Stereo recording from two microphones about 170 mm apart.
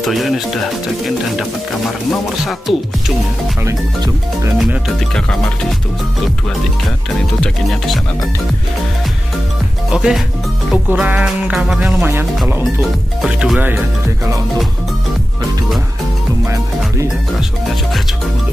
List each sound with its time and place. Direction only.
0.0 s music: centre (ahead or behind)
2.0 s music: centre (ahead or behind)
3.6 s speech: 15° right (ahead or behind)
4.6 s music: centre (ahead or behind)
7.4 s music: centre (ahead or behind)
9.8 s speech: 5° right (ahead or behind)
10.9 s music: 5° right (ahead or behind)
12.0 s speech: 10° right (ahead or behind)
13.2 s music: 5° right (ahead or behind)
16.4 s speech: 20° right (ahead or behind)